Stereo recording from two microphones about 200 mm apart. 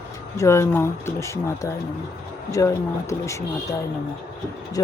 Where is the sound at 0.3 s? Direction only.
15° left (ahead or behind).